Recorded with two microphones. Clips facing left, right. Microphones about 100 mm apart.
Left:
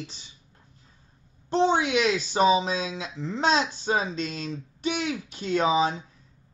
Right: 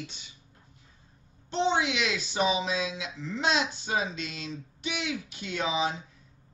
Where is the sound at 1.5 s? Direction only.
40° left (ahead or behind).